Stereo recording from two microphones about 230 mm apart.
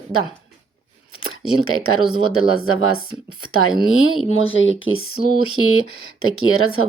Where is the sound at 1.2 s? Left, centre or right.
Left.